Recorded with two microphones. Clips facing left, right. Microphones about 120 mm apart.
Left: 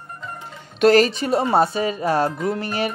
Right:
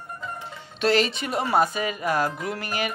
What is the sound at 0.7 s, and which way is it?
Speech, 45° left (ahead or behind).